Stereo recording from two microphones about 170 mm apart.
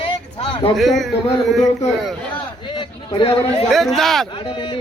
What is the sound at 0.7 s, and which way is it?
Speech, centre (ahead or behind).